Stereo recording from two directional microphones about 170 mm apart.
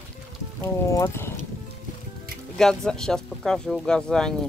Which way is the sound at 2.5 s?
5° left (ahead or behind).